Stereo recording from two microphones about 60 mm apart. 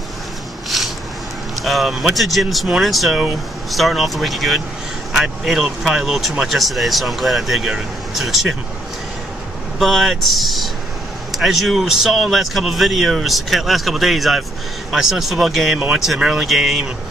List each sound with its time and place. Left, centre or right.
0.7 s a sound: centre
1.6 s speech: centre
9.8 s speech: centre
15.8 s speech: centre